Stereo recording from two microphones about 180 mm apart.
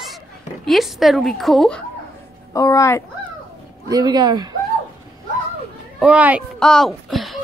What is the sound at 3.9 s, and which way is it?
Speech, 20° right (ahead or behind).